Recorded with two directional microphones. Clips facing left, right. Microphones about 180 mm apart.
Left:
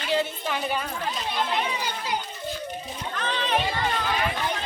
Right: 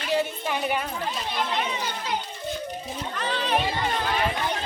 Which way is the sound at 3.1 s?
Centre (ahead or behind).